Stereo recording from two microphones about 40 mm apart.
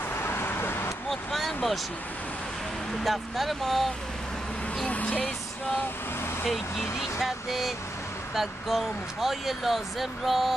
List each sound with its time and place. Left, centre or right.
0.1 s vehicle: left
1.3 s vehicle: centre
3.0 s speech: centre
4.8 s speech: left
7.0 s speech: centre